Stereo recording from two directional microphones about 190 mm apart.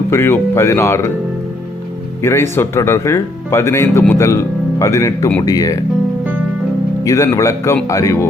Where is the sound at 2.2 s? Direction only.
15° left (ahead or behind).